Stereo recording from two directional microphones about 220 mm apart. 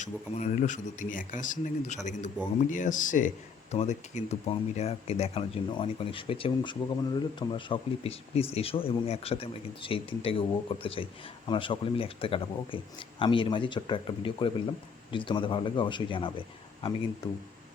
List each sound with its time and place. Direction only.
0.0 s speech: 35° left (ahead or behind)